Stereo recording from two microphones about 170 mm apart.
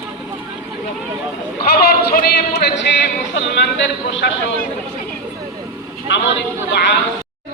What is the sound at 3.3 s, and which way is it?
Speech, 90° left.